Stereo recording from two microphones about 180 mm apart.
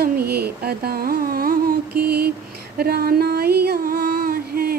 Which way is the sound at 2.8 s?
60° right (ahead or behind).